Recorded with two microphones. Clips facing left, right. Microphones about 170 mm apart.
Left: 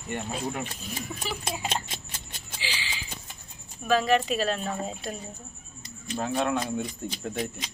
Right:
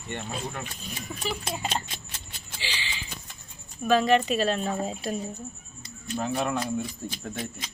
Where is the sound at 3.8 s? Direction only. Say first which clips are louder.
Right 2 dB; centre (ahead or behind).